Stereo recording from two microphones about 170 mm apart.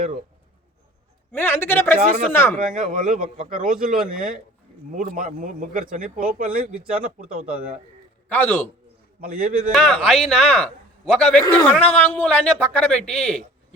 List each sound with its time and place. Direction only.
1.3 s a man's voice: 15° left (ahead or behind)
2.6 s speech: 50° right (ahead or behind)
8.3 s speech: 10° left (ahead or behind)
9.2 s a man's voice: 55° right (ahead or behind)
9.7 s a man's voice: centre (ahead or behind)